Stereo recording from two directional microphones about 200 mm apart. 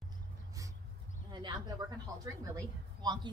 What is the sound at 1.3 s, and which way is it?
Speech, 20° right (ahead or behind).